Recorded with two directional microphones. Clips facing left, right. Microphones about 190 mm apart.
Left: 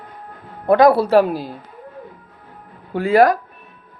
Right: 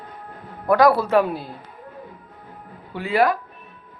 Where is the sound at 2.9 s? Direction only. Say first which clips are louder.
Left 6 dB; 45° left (ahead or behind).